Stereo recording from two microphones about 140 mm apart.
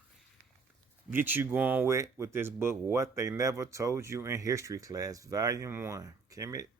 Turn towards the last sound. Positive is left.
turn(degrees=-25)  # may be behind; listen again after turning